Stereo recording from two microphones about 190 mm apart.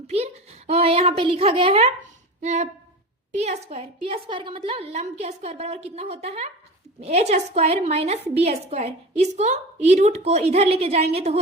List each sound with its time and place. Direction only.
0.1 s a woman's voice: 35° right (ahead or behind)